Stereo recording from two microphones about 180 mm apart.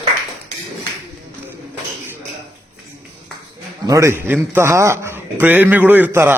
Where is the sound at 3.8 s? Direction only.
15° right (ahead or behind).